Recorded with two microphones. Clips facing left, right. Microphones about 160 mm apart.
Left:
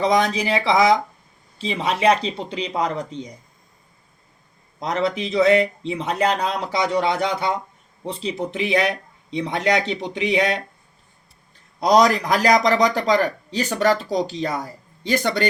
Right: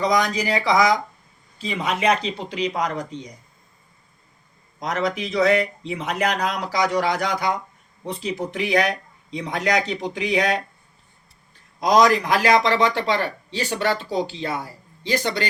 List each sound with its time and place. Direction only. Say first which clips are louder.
0.0 s speech: left 2 dB; 25° left (ahead or behind)
4.8 s speech: left 2 dB; 30° left (ahead or behind)
11.8 s a man's voice: left 1 dB; 35° left (ahead or behind); by 15.4 s 50° left (ahead or behind)